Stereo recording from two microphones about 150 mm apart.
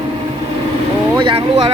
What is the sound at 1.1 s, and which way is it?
Speech, 35° right (ahead or behind).